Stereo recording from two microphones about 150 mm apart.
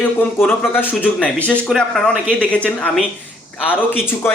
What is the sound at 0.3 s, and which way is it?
Speech, 15° left (ahead or behind).